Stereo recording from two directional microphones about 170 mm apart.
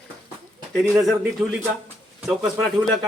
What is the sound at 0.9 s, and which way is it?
Speech, centre (ahead or behind).